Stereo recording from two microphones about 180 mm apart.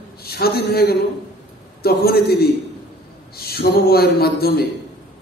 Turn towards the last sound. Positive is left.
turn(degrees=60)  # may be behind; listen again after turning